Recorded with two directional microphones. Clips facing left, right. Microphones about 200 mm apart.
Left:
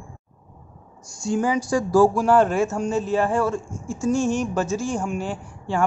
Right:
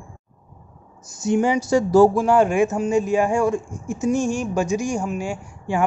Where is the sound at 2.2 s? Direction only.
10° right (ahead or behind).